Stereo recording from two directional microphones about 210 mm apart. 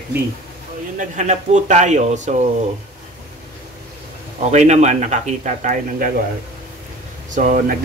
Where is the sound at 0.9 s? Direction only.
35° right (ahead or behind).